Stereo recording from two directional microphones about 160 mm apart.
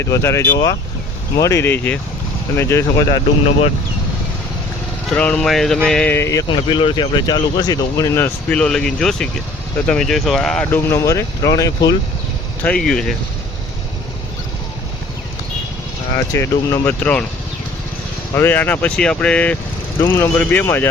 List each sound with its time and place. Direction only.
0.0 s speech: 15° left (ahead or behind)
5.1 s speech: 10° left (ahead or behind)
6.5 s speech: 30° left (ahead or behind)
12.6 s speech: 5° left (ahead or behind)
16.1 s speech: 15° left (ahead or behind)
18.3 s speech: 10° left (ahead or behind)